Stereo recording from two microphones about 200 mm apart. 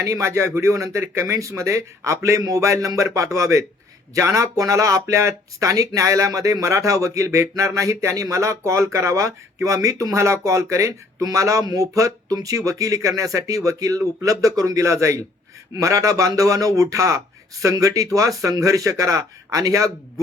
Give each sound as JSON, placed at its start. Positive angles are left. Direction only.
{"t": 0.0, "sound": "speech", "side_deg": -15}